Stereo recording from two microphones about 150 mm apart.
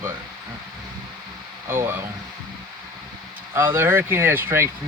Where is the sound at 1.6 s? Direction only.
15° right (ahead or behind).